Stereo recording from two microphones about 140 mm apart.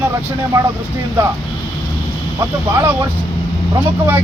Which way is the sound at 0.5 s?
30° right (ahead or behind).